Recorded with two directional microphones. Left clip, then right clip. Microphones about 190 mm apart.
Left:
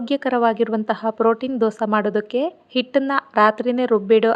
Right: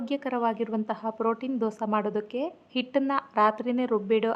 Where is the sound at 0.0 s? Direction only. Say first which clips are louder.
Left 9 dB; 25° left (ahead or behind).